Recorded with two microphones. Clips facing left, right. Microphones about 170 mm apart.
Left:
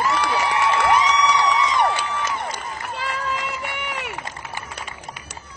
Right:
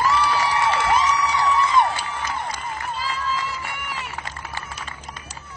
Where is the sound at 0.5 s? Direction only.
70° left (ahead or behind).